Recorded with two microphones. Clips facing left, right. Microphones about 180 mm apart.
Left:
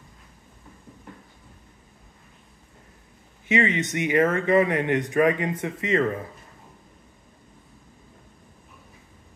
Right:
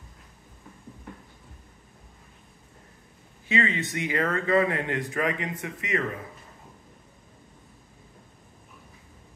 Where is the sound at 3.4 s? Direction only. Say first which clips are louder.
Left 4 dB; 20° left (ahead or behind).